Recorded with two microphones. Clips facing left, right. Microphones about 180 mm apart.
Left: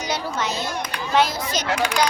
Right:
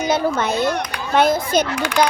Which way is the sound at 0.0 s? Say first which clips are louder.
Right 7 dB; 55° right (ahead or behind).